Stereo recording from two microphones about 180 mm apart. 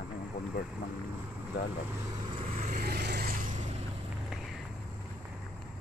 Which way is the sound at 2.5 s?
40° right (ahead or behind).